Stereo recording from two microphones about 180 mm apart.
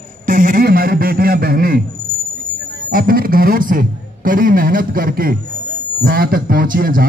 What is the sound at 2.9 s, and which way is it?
A man's voice, 50° right (ahead or behind).